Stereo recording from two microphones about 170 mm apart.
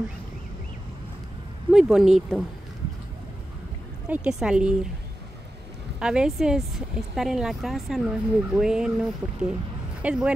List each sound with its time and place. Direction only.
1.7 s speech: 5° right (ahead or behind)
4.1 s speech: 5° right (ahead or behind)
5.9 s speech: 5° right (ahead or behind)